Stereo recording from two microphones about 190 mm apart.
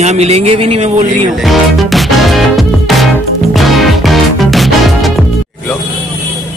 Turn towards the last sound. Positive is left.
turn(degrees=0)  # may be behind; listen again after turning